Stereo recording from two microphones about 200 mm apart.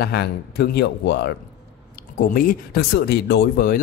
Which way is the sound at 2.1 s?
45° left (ahead or behind).